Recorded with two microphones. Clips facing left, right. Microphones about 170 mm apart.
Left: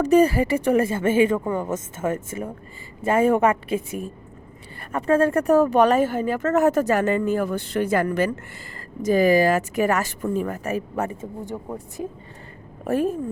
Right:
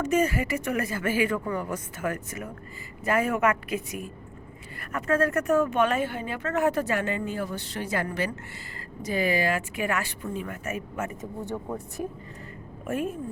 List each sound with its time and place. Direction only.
0.0 s speech: 35° left (ahead or behind)
11.4 s a woman's voice: 15° left (ahead or behind)
12.8 s a woman's voice: 35° left (ahead or behind)